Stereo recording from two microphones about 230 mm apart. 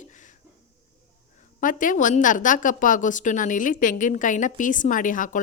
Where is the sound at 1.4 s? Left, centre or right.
Left.